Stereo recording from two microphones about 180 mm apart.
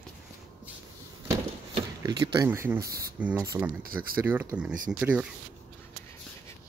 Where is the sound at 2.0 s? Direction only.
20° right (ahead or behind).